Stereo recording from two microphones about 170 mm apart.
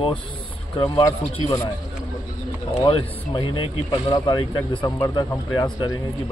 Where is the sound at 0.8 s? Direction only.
25° left (ahead or behind).